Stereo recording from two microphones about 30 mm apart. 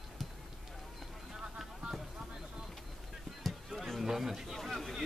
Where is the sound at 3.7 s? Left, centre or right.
Centre.